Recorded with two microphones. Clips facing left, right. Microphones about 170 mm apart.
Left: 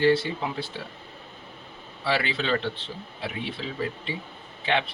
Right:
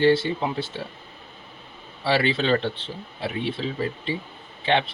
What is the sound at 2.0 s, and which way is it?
A man's voice, 30° right (ahead or behind).